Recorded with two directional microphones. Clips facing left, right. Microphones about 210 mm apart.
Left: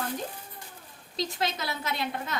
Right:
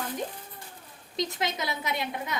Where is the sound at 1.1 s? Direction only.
20° right (ahead or behind).